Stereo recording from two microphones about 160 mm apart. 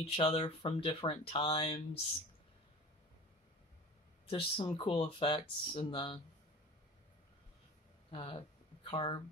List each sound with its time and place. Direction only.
0.0 s speech: 35° left (ahead or behind)
4.3 s speech: 35° left (ahead or behind)
8.1 s speech: 35° left (ahead or behind)